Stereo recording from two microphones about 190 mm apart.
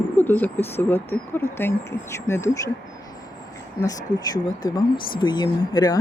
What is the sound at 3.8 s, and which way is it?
Speech, 20° left (ahead or behind).